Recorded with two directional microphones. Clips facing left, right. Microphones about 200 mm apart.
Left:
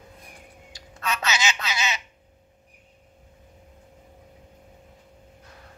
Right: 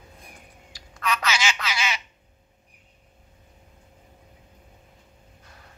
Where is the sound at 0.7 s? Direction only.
25° left (ahead or behind).